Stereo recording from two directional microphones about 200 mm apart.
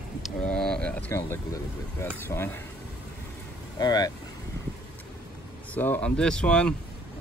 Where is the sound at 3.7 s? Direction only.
20° left (ahead or behind).